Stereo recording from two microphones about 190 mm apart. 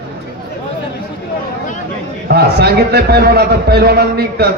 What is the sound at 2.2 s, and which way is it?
A man's voice, 60° right (ahead or behind).